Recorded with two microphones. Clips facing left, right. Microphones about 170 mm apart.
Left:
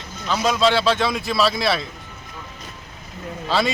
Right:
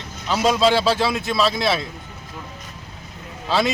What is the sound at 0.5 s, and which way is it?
A man's voice, 10° right (ahead or behind).